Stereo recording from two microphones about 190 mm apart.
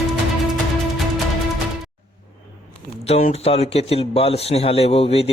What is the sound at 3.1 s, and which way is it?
A man's voice, 35° left (ahead or behind).